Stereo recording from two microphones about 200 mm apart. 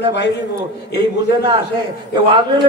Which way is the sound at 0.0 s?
60° left (ahead or behind).